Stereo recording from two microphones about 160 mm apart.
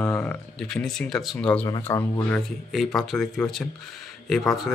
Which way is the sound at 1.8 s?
20° left (ahead or behind).